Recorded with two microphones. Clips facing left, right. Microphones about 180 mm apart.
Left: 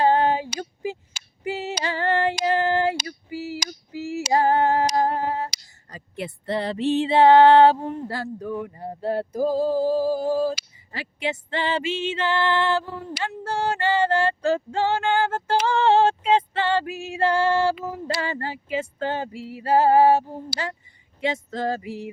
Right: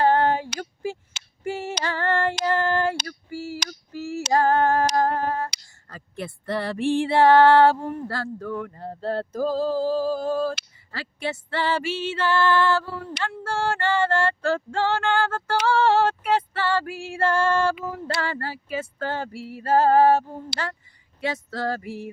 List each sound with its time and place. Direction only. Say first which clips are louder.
0.0 s female singing: even; 15° left (ahead or behind)
5.9 s music: left 1 dB; 15° left (ahead or behind)
19.5 s female singing: left 1 dB; 15° left (ahead or behind)
21.2 s music: left 2 dB; 20° left (ahead or behind)